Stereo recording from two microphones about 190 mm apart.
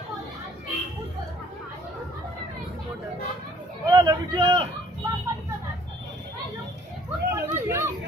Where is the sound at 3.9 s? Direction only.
20° right (ahead or behind).